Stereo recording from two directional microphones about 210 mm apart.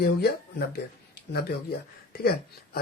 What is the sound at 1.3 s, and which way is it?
Speech, 45° left (ahead or behind).